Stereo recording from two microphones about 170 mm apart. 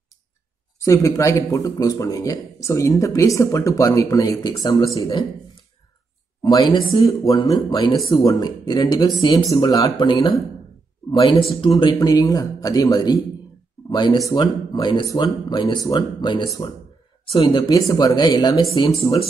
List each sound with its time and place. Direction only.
0.7 s speech: 20° left (ahead or behind)
6.4 s speech: 25° left (ahead or behind)